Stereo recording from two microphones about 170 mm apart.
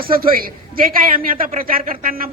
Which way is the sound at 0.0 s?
60° right (ahead or behind).